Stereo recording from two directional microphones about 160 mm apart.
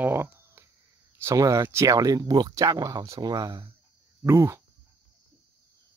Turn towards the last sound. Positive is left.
turn(degrees=-20)  # may be behind; listen again after turning